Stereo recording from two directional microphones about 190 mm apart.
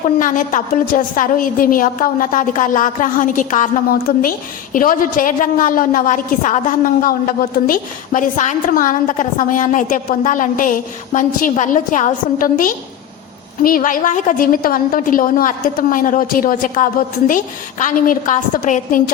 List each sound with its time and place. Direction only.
0.2 s a woman's voice: 45° left (ahead or behind)